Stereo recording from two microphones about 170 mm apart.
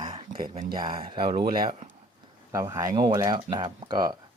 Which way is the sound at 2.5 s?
20° right (ahead or behind).